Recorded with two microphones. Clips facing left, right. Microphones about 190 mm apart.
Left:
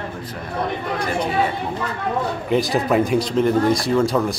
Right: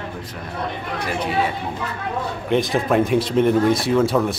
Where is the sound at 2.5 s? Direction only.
Centre (ahead or behind).